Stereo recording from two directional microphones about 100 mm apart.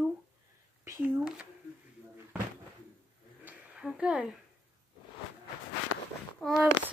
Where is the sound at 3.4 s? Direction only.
10° right (ahead or behind).